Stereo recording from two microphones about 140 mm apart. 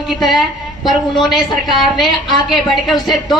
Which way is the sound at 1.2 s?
30° left (ahead or behind).